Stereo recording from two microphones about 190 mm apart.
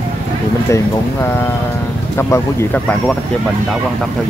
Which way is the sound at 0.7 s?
10° left (ahead or behind).